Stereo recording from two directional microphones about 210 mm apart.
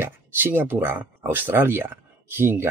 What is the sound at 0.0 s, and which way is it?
Speech, 10° right (ahead or behind).